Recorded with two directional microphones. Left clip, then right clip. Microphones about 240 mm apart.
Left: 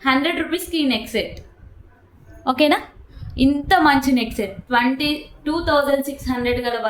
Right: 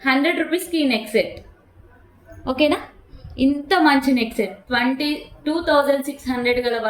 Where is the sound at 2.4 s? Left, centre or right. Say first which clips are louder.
Left 2 dB; left.